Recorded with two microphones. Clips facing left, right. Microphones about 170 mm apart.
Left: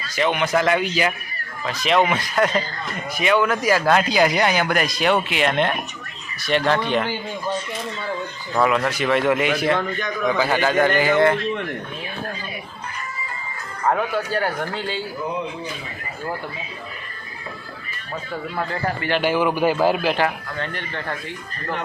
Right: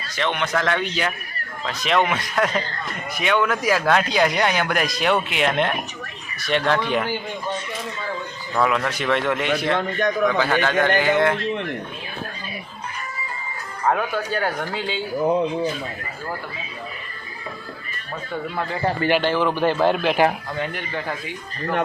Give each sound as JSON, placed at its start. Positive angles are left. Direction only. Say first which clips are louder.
{"t": 0.2, "sound": "speech", "louder": "left 3 dB", "side_deg": 5}
{"t": 8.5, "sound": "speech", "louder": "left 2 dB", "side_deg": 5}
{"t": 13.8, "sound": "speech", "louder": "left 1 dB", "side_deg": 0}
{"t": 18.8, "sound": "a man's voice", "louder": "right 7 dB", "side_deg": -25}
{"t": 19.2, "sound": "speech", "louder": "left 1 dB", "side_deg": 10}
{"t": 20.6, "sound": "speech", "louder": "right 2 dB", "side_deg": -5}